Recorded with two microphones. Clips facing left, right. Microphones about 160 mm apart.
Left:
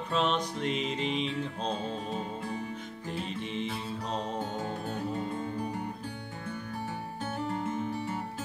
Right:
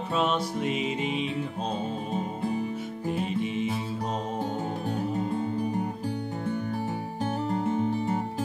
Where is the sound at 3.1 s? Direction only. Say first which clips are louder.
Right 7 dB; 10° right (ahead or behind).